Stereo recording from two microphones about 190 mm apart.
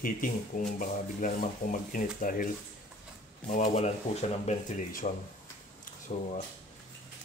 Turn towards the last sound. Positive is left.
turn(degrees=35)  # may be behind; listen again after turning